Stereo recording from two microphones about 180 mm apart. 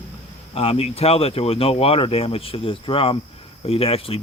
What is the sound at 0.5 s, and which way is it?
Speech, 35° left (ahead or behind).